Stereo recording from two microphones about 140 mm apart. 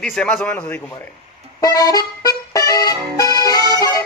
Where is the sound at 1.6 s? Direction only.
25° left (ahead or behind).